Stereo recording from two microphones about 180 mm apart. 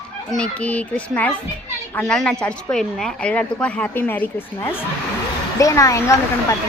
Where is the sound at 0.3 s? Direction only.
5° left (ahead or behind).